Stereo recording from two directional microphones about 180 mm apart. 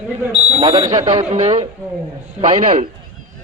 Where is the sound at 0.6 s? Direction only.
25° right (ahead or behind).